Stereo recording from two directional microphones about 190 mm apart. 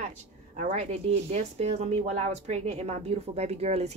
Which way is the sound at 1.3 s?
35° right (ahead or behind).